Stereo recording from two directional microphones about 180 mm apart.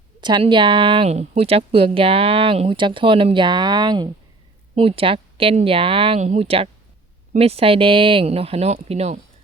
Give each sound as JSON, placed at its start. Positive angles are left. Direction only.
{"t": 0.2, "sound": "speech", "side_deg": -25}